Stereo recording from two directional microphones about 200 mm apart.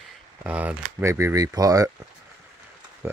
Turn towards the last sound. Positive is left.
turn(degrees=-10)  # may be behind; listen again after turning